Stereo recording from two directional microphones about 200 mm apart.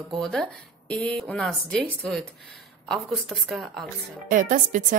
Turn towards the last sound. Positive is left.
turn(degrees=-40)  # may be behind; listen again after turning